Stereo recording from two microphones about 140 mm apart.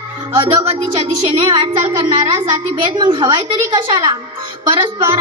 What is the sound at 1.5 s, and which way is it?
A child's voice, 35° right (ahead or behind).